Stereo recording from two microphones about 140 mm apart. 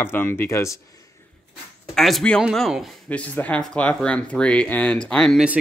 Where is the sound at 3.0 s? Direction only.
10° left (ahead or behind).